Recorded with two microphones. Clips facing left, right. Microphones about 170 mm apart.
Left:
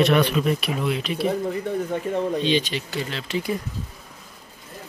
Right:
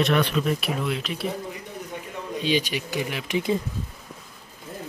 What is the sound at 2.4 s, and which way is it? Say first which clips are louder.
Speech: left 2 dB; 10° right (ahead or behind).